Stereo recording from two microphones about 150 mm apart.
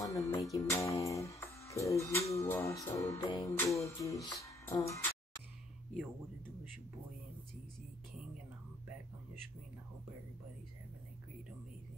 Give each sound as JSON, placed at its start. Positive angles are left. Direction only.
{"t": 0.0, "sound": "music", "side_deg": 20}
{"t": 4.4, "sound": "speech", "side_deg": 20}